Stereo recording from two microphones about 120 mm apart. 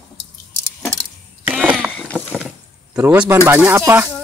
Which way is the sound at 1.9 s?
10° left (ahead or behind).